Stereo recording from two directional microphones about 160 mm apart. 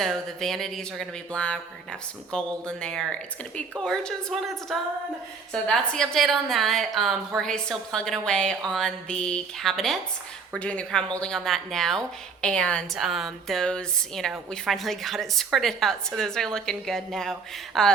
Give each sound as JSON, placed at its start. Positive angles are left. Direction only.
{"t": 0.0, "sound": "a woman's voice", "side_deg": 0}